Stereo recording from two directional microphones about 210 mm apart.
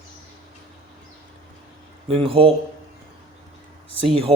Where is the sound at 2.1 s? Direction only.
25° right (ahead or behind).